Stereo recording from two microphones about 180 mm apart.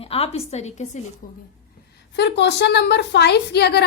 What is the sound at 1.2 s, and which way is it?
Speech, 50° left (ahead or behind).